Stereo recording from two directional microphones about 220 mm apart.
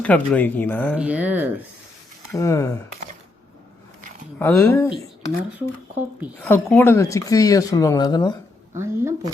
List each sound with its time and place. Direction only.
0.0 s speech: 5° left (ahead or behind)
0.9 s speech: 5° right (ahead or behind)
2.3 s speech: 15° left (ahead or behind)
4.4 s speech: 10° left (ahead or behind)
6.1 s speech: 5° right (ahead or behind)
6.5 s speech: 10° left (ahead or behind)
8.8 s speech: 10° right (ahead or behind)